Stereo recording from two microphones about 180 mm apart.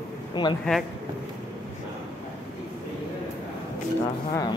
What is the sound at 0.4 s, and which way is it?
Speech, 25° left (ahead or behind).